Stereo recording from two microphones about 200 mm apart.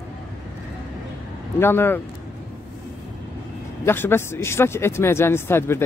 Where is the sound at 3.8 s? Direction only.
10° left (ahead or behind).